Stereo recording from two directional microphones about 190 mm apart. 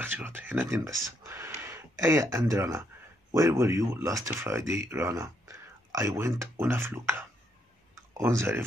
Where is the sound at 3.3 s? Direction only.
15° right (ahead or behind).